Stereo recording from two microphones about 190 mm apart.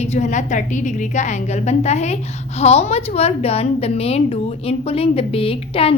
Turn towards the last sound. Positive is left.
turn(degrees=30)  # may be behind; listen again after turning